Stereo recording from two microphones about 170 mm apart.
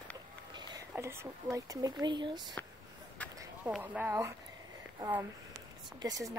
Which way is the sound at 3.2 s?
10° left (ahead or behind).